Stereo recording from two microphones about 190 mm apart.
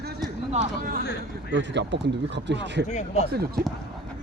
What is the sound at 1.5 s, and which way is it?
Speech, 70° right (ahead or behind).